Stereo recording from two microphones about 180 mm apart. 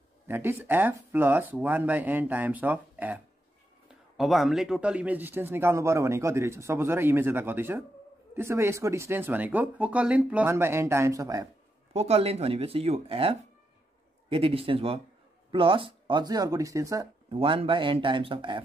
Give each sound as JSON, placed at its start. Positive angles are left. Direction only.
{"t": 0.3, "sound": "a man's voice", "side_deg": -15}
{"t": 4.2, "sound": "a man's voice", "side_deg": 0}
{"t": 11.9, "sound": "speech", "side_deg": -35}